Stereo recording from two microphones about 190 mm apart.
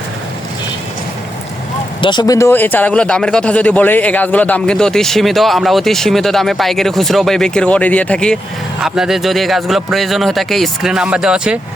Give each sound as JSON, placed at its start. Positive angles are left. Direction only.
{"t": 2.0, "sound": "speech", "side_deg": 25}